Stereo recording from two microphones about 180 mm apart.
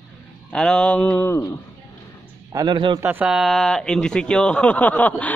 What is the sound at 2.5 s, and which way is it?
Speech, 25° right (ahead or behind).